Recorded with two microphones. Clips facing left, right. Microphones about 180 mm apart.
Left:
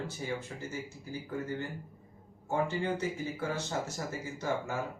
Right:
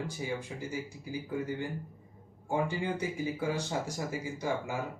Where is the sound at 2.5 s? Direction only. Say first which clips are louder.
Even; 10° right (ahead or behind).